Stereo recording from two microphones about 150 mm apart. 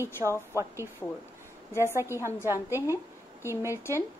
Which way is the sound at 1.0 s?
10° left (ahead or behind).